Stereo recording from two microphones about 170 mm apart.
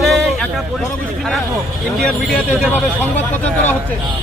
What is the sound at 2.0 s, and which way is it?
Speech, 5° left (ahead or behind).